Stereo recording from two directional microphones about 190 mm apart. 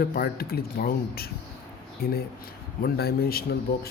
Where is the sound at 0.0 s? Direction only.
50° left (ahead or behind).